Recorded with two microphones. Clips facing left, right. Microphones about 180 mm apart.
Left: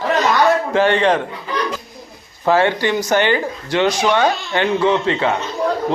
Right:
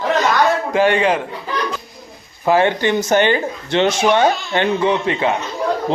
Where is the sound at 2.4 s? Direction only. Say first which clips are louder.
Right 1 dB; 15° right (ahead or behind).